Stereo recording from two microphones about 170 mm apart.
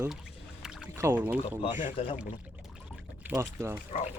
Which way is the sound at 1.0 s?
15° right (ahead or behind).